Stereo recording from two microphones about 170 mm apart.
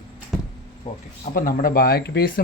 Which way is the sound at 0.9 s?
40° left (ahead or behind).